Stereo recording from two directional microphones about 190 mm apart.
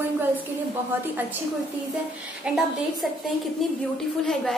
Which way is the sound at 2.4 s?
Centre (ahead or behind).